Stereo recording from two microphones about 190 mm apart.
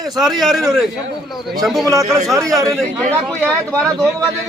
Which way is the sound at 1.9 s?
15° right (ahead or behind).